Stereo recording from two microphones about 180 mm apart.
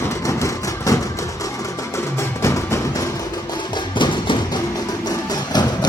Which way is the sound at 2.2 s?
15° left (ahead or behind).